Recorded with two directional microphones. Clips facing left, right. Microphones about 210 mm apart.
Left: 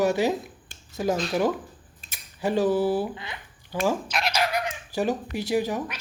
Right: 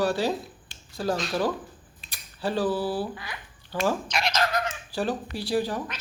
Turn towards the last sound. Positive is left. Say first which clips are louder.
# left 1 dB
turn(degrees=15)  # may be behind; listen again after turning